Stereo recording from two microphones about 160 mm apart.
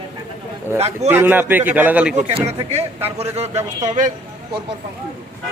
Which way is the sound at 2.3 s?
40° right (ahead or behind).